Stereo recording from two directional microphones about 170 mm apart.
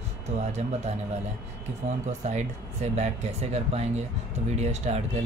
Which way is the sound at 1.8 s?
50° right (ahead or behind).